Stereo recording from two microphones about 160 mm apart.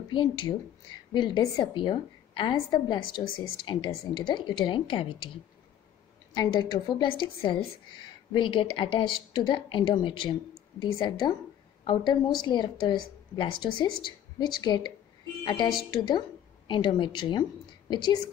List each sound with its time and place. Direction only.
0.1 s a woman's voice: 30° left (ahead or behind)
6.3 s a woman's voice: 25° left (ahead or behind)